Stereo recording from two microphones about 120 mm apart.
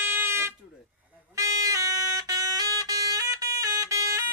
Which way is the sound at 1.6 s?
30° right (ahead or behind).